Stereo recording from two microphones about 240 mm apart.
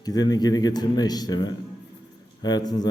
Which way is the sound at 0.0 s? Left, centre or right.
Centre.